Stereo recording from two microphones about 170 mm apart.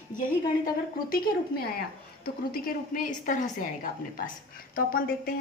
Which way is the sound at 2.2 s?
55° left (ahead or behind).